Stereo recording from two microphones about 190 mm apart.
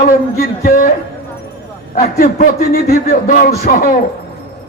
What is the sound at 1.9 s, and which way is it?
A man's voice, 40° left (ahead or behind).